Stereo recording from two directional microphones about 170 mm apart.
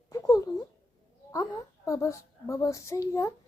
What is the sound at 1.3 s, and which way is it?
A woman's voice, 20° left (ahead or behind).